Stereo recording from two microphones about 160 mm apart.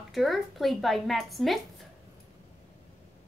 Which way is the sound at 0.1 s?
Centre (ahead or behind).